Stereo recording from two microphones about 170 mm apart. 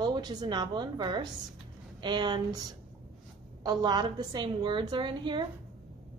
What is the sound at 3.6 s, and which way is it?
A woman's voice, 25° right (ahead or behind).